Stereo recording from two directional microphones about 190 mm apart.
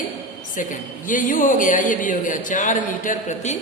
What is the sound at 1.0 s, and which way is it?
Music, 45° left (ahead or behind).